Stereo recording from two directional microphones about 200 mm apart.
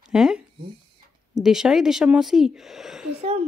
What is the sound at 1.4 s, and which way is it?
Speech, centre (ahead or behind).